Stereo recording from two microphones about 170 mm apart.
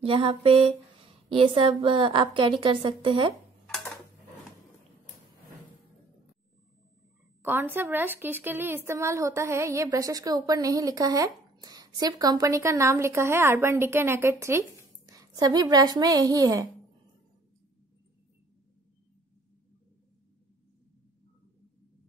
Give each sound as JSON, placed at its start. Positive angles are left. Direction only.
{"t": 0.0, "sound": "a sound", "side_deg": -30}
{"t": 1.3, "sound": "a woman's voice", "side_deg": -30}
{"t": 3.6, "sound": "dishes", "side_deg": 5}
{"t": 7.4, "sound": "a woman's voice", "side_deg": -10}